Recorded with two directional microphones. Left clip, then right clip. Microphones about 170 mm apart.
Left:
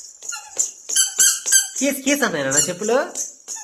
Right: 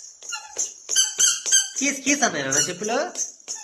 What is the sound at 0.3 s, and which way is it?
Dog, 20° right (ahead or behind).